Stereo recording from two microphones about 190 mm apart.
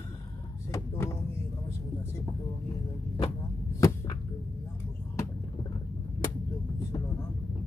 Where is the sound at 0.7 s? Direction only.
15° left (ahead or behind).